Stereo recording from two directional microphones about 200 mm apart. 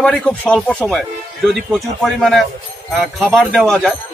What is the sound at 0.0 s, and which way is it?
A man's voice, 5° left (ahead or behind).